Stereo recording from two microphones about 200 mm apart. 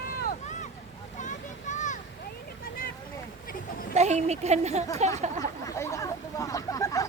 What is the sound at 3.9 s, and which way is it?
Speech, 35° right (ahead or behind).